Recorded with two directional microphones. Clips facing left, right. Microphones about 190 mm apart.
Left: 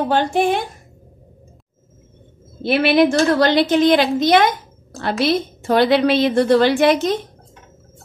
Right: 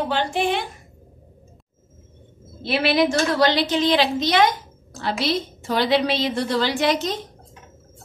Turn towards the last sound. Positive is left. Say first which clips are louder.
# left 7 dB
turn(degrees=55)  # may be behind; listen again after turning